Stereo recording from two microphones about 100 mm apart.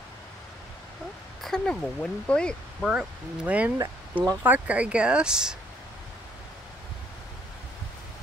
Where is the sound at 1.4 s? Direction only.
5° left (ahead or behind).